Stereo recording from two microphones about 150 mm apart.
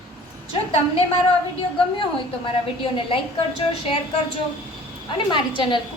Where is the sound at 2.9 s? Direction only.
40° left (ahead or behind).